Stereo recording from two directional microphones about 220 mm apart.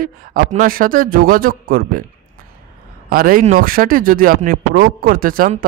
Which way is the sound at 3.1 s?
40° right (ahead or behind).